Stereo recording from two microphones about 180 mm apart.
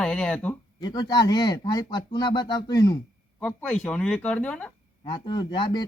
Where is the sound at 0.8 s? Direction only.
25° left (ahead or behind).